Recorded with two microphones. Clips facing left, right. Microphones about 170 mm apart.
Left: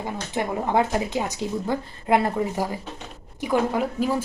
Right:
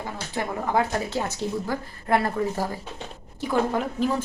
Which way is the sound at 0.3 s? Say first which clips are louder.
Left 2 dB; 20° left (ahead or behind).